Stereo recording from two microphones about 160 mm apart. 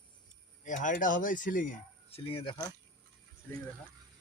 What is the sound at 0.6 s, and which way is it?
Speech, 50° left (ahead or behind).